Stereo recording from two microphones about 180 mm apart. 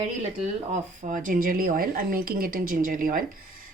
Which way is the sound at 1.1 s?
50° right (ahead or behind).